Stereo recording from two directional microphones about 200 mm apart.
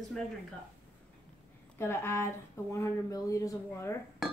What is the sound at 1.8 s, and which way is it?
Speech, 10° left (ahead or behind).